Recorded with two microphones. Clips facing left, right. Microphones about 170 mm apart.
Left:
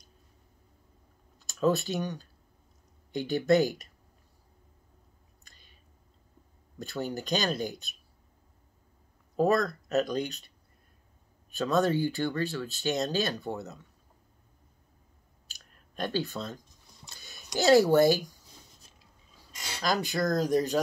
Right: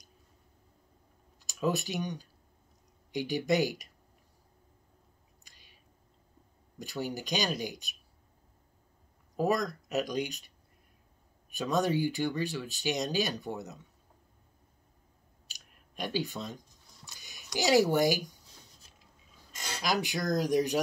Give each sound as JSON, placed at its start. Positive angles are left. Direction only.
{"t": 1.4, "sound": "speech", "side_deg": -15}
{"t": 5.5, "sound": "a sound", "side_deg": -10}
{"t": 6.8, "sound": "speech", "side_deg": -15}
{"t": 9.4, "sound": "speech", "side_deg": -15}
{"t": 11.5, "sound": "speech", "side_deg": -15}
{"t": 15.5, "sound": "clicking", "side_deg": -15}
{"t": 17.1, "sound": "a sound", "side_deg": -15}
{"t": 17.6, "sound": "speech", "side_deg": -15}
{"t": 19.8, "sound": "speech", "side_deg": -15}